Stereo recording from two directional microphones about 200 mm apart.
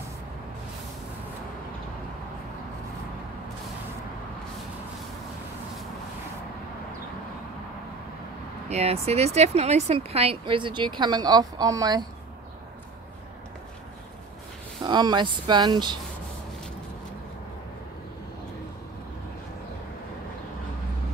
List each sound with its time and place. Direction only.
8.6 s speech: 30° right (ahead or behind)
14.8 s speech: 20° right (ahead or behind)